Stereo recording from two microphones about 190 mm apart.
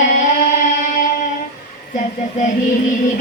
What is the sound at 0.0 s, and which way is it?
Music, 40° left (ahead or behind).